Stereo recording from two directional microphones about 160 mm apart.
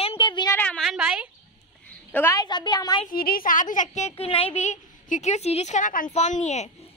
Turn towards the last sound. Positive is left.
turn(degrees=45)  # may be behind; listen again after turning